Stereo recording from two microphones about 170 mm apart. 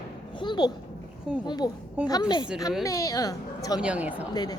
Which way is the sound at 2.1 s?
25° left (ahead or behind).